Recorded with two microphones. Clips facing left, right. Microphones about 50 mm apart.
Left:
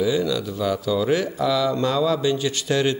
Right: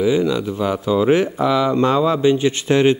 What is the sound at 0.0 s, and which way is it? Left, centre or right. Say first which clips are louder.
Speech: right 4 dB; right.